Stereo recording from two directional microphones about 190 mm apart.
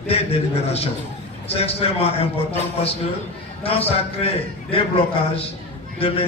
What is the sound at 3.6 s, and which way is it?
A man's voice, 30° left (ahead or behind).